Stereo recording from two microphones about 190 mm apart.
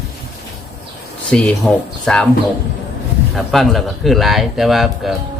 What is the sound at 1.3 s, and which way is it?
Speech, 5° left (ahead or behind).